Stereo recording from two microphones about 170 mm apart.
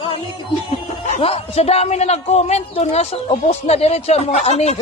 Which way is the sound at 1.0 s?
35° left (ahead or behind).